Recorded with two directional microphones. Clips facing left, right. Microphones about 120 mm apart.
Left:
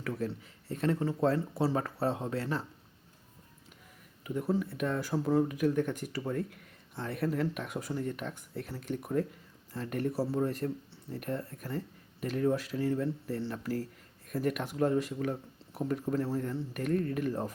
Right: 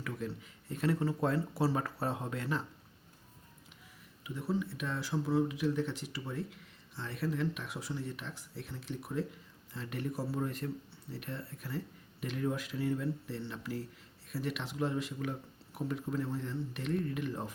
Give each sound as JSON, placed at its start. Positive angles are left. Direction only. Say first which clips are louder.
{"t": 0.0, "sound": "speech", "louder": "left 4 dB", "side_deg": 40}
{"t": 4.2, "sound": "speech", "louder": "left 4 dB", "side_deg": 45}